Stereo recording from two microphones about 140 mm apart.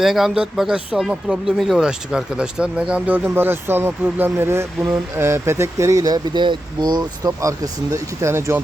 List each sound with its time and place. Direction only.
0.0 s speech: centre (ahead or behind); by 8.6 s 20° right (ahead or behind)